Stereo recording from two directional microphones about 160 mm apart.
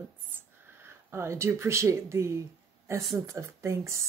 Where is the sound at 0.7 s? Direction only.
15° right (ahead or behind).